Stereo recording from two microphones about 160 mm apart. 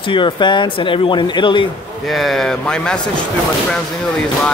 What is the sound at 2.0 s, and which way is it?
Speech, centre (ahead or behind).